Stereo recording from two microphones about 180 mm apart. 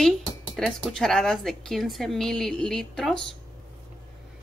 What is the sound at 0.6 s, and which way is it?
A woman's voice, centre (ahead or behind).